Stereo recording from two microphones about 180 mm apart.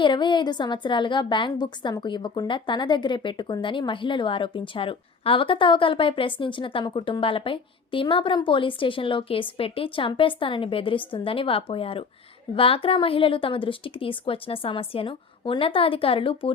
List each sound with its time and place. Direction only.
0.0 s a woman's voice: 25° left (ahead or behind)